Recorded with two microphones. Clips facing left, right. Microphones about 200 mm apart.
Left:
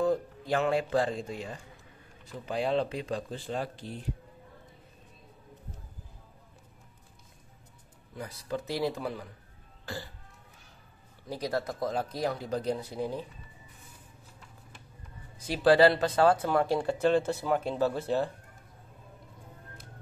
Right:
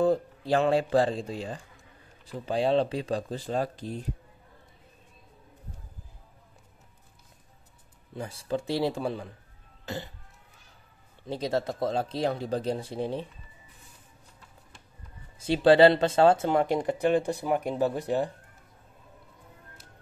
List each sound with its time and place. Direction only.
0.0 s speech: 30° right (ahead or behind)
8.2 s speech: 30° right (ahead or behind)
9.8 s cough: 20° right (ahead or behind)
11.2 s speech: 25° right (ahead or behind)
15.3 s speech: 25° right (ahead or behind)